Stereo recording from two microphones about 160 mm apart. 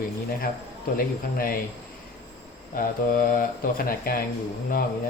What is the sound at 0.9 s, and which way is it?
Speech, 65° left (ahead or behind).